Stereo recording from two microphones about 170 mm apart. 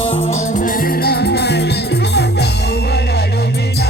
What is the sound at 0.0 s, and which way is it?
Music, 35° left (ahead or behind).